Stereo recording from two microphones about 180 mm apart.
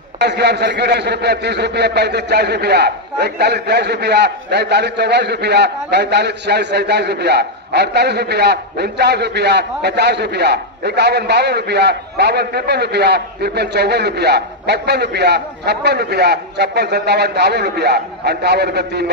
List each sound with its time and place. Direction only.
0.2 s a man's voice: 70° right (ahead or behind)